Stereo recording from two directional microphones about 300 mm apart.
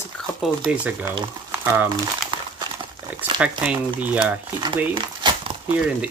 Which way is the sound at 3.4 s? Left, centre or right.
Centre.